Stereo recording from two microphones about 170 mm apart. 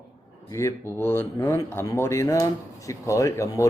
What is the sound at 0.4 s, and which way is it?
Speech, 15° left (ahead or behind).